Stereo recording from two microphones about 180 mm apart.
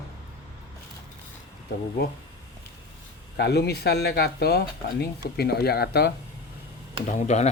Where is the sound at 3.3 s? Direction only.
65° left (ahead or behind).